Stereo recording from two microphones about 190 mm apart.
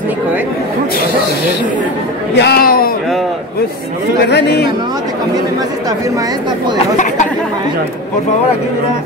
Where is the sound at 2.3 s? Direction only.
60° left (ahead or behind).